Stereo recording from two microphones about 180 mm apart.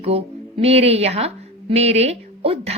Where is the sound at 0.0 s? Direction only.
35° right (ahead or behind).